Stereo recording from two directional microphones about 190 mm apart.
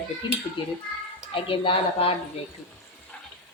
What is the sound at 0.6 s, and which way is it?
A woman's voice, 25° left (ahead or behind).